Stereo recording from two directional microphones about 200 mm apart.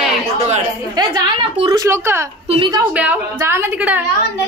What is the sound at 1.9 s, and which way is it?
Speech, 15° right (ahead or behind).